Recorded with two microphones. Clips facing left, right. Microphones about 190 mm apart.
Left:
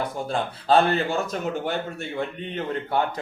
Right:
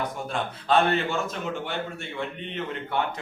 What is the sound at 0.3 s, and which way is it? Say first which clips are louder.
Speech: left 4 dB; 35° left (ahead or behind).